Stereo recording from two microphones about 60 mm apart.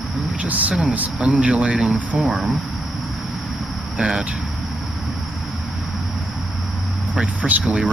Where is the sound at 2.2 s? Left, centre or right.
Centre.